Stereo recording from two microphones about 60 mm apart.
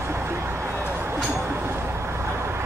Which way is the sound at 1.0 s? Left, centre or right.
Right.